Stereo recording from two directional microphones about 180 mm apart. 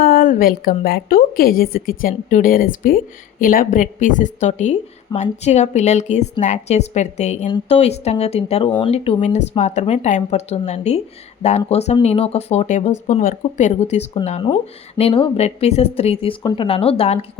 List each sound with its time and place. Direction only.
0.0 s a woman's voice: 50° left (ahead or behind); by 17.2 s 30° left (ahead or behind)